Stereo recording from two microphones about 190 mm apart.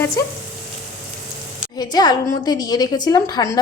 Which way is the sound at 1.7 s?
20° left (ahead or behind).